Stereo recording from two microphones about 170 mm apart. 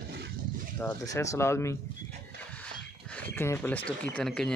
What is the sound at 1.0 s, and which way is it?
Speech, 20° left (ahead or behind).